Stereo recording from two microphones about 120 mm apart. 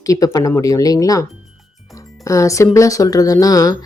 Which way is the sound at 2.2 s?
25° left (ahead or behind).